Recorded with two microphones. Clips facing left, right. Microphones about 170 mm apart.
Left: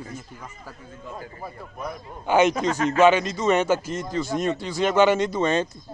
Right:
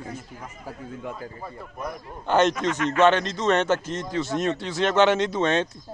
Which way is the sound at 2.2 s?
5° left (ahead or behind).